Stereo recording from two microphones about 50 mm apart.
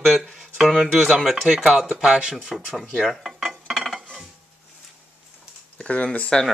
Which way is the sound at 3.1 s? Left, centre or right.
Centre.